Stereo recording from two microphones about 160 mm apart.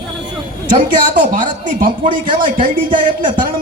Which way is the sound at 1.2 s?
55° right (ahead or behind).